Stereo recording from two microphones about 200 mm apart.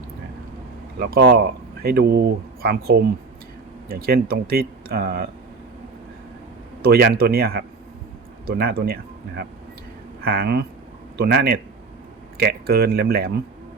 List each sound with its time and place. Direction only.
0.9 s speech: 50° right (ahead or behind)
6.8 s speech: 50° right (ahead or behind)